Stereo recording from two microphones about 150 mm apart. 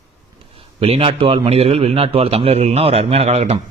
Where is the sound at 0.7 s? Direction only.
45° right (ahead or behind).